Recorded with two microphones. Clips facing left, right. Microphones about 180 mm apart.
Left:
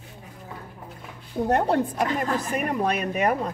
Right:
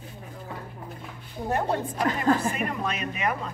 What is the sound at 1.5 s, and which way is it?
Speech, 65° left (ahead or behind).